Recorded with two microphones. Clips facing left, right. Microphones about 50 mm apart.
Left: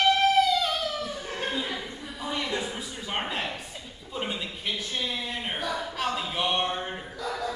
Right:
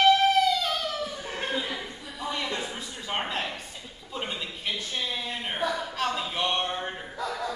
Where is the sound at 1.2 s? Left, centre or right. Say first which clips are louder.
Right 1 dB; centre.